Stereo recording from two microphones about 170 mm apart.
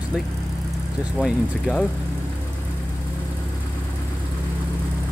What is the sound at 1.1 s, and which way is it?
Speech, 5° left (ahead or behind).